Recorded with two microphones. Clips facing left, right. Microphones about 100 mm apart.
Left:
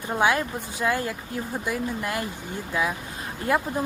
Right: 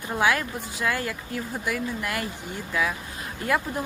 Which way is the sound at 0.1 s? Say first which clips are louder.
Left 1 dB; 25° left (ahead or behind).